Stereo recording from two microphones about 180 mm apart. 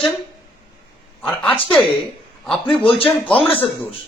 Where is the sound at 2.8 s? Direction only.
30° left (ahead or behind).